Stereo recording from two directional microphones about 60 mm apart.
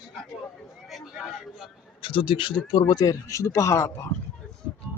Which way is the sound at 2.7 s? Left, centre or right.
Left.